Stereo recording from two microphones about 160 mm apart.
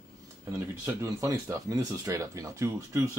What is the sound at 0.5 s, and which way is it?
Speech, 20° right (ahead or behind).